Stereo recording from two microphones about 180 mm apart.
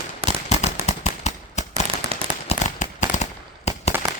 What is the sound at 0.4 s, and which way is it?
Firecracker, 40° left (ahead or behind).